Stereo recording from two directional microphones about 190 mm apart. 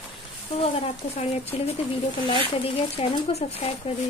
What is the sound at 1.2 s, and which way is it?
Speech, 35° left (ahead or behind).